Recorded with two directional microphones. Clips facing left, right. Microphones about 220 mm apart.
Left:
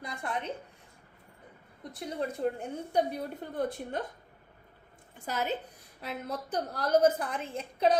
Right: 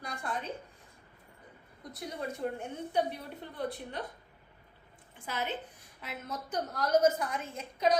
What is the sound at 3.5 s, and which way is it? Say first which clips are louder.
Speech: left 4 dB; 45° left (ahead or behind).